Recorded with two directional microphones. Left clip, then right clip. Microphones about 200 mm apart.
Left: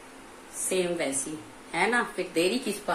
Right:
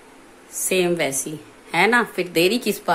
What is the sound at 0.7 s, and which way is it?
A woman's voice, 45° right (ahead or behind).